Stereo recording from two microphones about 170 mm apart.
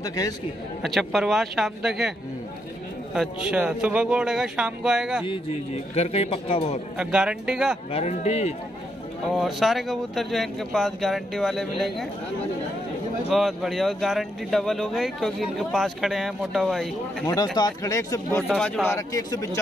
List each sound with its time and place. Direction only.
0.0 s speech: 20° left (ahead or behind)
0.8 s speech: centre (ahead or behind)
3.4 s speech: 10° right (ahead or behind)
5.9 s a man's voice: 35° left (ahead or behind)
7.0 s speech: 5° right (ahead or behind)
7.9 s a man's voice: 45° left (ahead or behind)
9.3 s speech: centre (ahead or behind)
13.3 s speech: centre (ahead or behind)
17.6 s speech: 20° left (ahead or behind)
18.5 s speech: 5° right (ahead or behind)
18.9 s speech: 20° left (ahead or behind)